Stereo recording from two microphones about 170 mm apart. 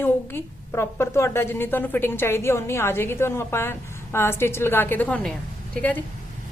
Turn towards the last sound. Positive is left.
turn(degrees=10)  # may be behind; listen again after turning